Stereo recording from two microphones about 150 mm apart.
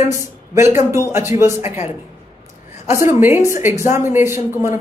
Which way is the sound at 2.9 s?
20° right (ahead or behind).